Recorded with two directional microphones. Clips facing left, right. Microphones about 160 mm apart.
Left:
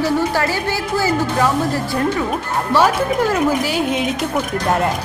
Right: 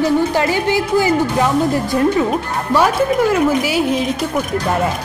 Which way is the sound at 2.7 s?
15° right (ahead or behind).